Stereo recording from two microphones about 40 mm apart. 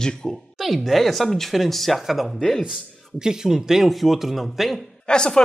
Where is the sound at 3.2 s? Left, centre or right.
Centre.